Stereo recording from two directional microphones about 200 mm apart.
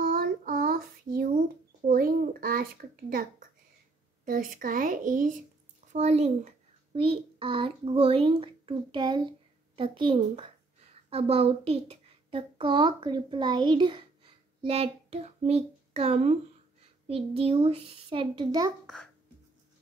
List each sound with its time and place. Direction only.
0.0 s child singing: 45° right (ahead or behind)
1.9 s a sound: 45° right (ahead or behind)
4.2 s a child's voice: 45° right (ahead or behind); by 18.7 s 20° right (ahead or behind)